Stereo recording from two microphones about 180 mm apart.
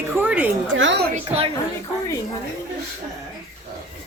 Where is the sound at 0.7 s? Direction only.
90° right.